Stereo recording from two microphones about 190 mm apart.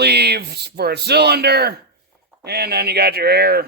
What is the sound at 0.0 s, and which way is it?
Speech, 60° right (ahead or behind).